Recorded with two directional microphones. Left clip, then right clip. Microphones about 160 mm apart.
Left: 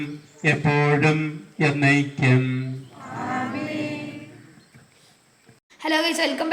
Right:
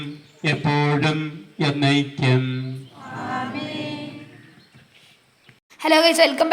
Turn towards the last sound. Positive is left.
turn(degrees=-40)  # may be behind; listen again after turning